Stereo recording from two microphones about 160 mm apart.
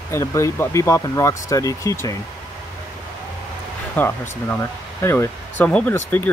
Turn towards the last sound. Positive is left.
turn(degrees=10)  # may be behind; listen again after turning